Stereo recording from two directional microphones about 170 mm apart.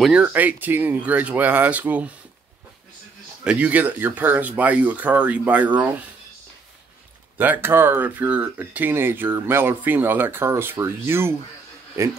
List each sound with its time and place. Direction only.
0.0 s speech: 5° right (ahead or behind)
3.4 s speech: 5° right (ahead or behind)
7.3 s speech: 10° right (ahead or behind)